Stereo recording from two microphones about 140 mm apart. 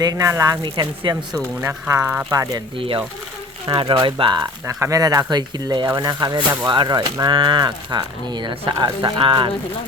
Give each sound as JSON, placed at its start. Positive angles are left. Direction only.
{"t": 0.0, "sound": "speech", "side_deg": -25}
{"t": 1.6, "sound": "speech", "side_deg": -20}
{"t": 2.7, "sound": "speech", "side_deg": -40}
{"t": 4.6, "sound": "speech", "side_deg": -20}